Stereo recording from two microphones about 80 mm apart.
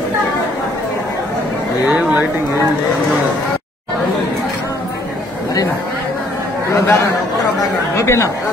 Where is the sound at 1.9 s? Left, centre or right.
Centre.